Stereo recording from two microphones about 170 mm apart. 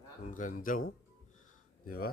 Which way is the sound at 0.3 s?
50° left (ahead or behind).